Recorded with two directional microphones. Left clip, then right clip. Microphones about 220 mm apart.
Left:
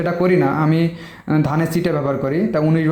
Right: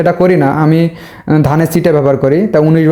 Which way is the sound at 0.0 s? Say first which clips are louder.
Right 7 dB; 50° right (ahead or behind).